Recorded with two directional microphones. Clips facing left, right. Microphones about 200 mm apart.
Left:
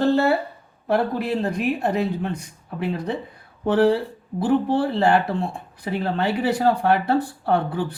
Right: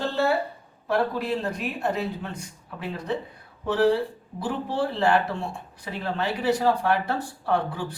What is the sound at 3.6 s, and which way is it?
Speech, 55° left (ahead or behind).